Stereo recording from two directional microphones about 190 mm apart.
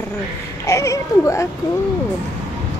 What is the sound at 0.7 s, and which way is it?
Speech, 15° left (ahead or behind).